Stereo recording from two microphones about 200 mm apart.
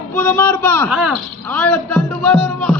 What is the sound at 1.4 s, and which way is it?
A man's voice, 5° left (ahead or behind).